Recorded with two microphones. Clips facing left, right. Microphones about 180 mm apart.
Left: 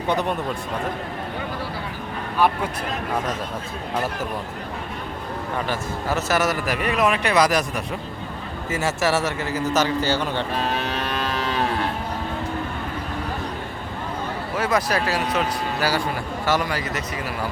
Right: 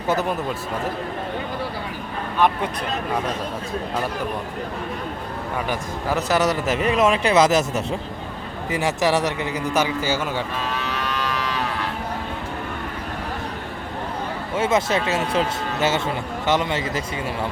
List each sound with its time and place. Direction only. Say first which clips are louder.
0.1 s a man's voice: right 1 dB; 5° right (ahead or behind)
5.6 s a man's voice: right 1 dB; 15° right (ahead or behind)
8.7 s a man's voice: right 2 dB; 15° right (ahead or behind)
10.8 s music: left 1 dB; 55° left (ahead or behind)
11.3 s cattle: left 1 dB; 30° left (ahead or behind)
14.5 s a man's voice: right 2 dB; 25° right (ahead or behind)